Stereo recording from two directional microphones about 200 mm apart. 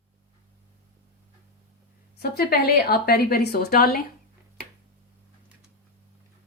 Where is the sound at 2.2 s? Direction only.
50° left (ahead or behind).